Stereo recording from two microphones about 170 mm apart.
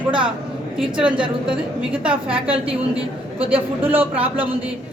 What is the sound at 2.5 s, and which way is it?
A man's voice, 35° right (ahead or behind).